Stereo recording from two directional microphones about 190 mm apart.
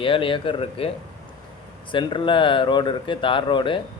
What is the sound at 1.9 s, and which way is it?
Speech, 25° left (ahead or behind).